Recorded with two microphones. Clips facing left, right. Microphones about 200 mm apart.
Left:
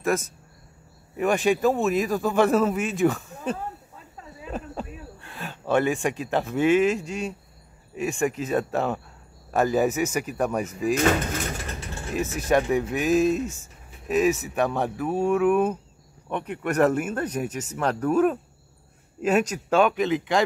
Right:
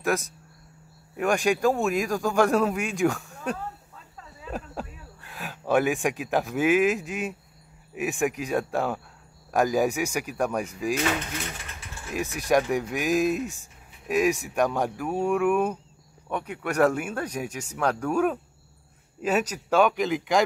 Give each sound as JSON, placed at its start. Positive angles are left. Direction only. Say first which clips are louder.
{"t": 0.0, "sound": "a man's voice", "louder": "left 2 dB", "side_deg": 0}
{"t": 4.5, "sound": "a sound", "louder": "left 1 dB", "side_deg": 0}
{"t": 5.3, "sound": "a man's voice", "louder": "even", "side_deg": 0}
{"t": 9.5, "sound": "speech", "louder": "left 1 dB", "side_deg": -10}
{"t": 10.3, "sound": "a man's voice", "louder": "left 1 dB", "side_deg": 5}
{"t": 10.7, "sound": "speech", "louder": "left 3 dB", "side_deg": -10}
{"t": 11.0, "sound": "a sound", "louder": "left 5 dB", "side_deg": 45}
{"t": 12.1, "sound": "speech", "louder": "left 1 dB", "side_deg": -15}
{"t": 15.1, "sound": "a man's voice", "louder": "left 2 dB", "side_deg": 5}
{"t": 16.3, "sound": "a man's voice", "louder": "left 2 dB", "side_deg": -5}